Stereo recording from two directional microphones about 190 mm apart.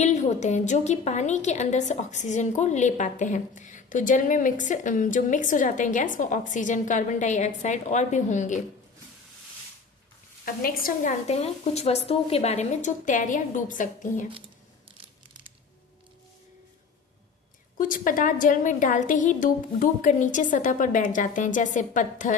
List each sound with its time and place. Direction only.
0.0 s a woman's voice: 40° left (ahead or behind)
10.4 s a woman's voice: 50° left (ahead or behind)
17.7 s a woman's voice: 45° left (ahead or behind)